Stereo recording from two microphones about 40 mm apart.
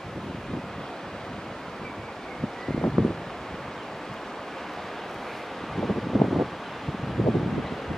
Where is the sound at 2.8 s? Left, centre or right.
Centre.